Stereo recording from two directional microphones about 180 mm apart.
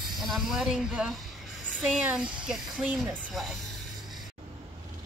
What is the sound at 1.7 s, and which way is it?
Speech, centre (ahead or behind).